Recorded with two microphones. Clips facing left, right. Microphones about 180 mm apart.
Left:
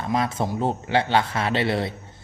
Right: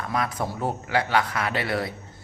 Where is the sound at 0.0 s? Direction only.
25° left (ahead or behind).